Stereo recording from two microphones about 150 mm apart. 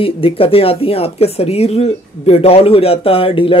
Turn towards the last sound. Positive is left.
turn(degrees=35)  # may be behind; listen again after turning